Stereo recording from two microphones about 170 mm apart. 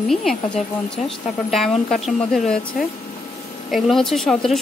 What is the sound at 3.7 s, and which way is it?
Speech, centre (ahead or behind).